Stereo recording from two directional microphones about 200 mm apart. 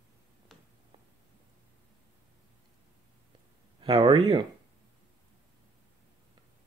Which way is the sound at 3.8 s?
25° right (ahead or behind).